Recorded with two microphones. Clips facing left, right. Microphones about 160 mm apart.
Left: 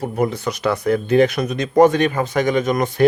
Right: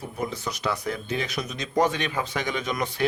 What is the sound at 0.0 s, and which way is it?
A man's voice, 65° left (ahead or behind).